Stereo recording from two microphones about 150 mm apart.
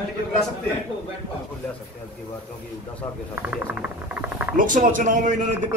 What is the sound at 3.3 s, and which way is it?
Speech, 10° right (ahead or behind).